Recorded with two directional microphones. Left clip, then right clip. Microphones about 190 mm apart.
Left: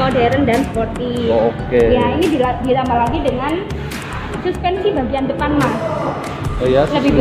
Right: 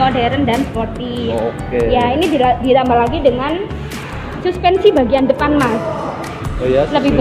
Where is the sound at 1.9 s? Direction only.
55° right (ahead or behind).